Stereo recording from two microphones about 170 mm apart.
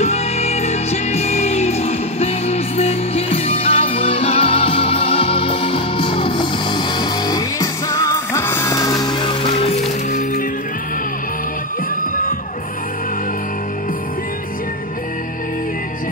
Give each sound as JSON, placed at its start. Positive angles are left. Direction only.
{"t": 0.0, "sound": "music", "side_deg": 40}